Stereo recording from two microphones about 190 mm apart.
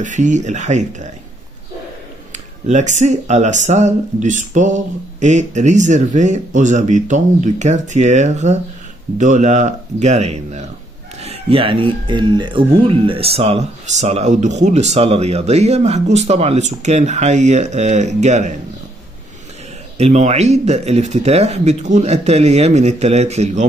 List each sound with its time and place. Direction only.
0.0 s speech: 40° right (ahead or behind)
2.3 s speech: 40° right (ahead or behind)
20.0 s speech: 35° right (ahead or behind)